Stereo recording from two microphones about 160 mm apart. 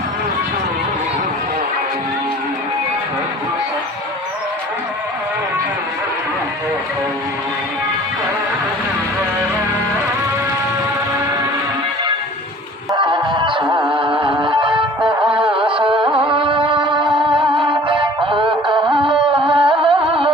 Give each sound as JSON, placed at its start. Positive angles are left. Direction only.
{"t": 12.9, "sound": "music", "side_deg": -30}